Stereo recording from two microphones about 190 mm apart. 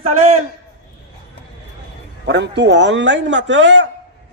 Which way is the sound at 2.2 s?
65° right (ahead or behind).